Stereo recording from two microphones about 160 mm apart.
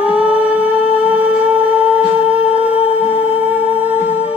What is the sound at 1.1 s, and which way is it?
Humming, 10° right (ahead or behind).